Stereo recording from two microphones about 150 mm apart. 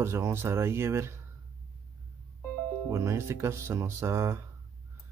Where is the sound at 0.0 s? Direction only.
20° right (ahead or behind).